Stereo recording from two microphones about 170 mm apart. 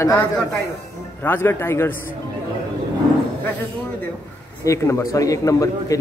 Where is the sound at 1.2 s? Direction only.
15° left (ahead or behind).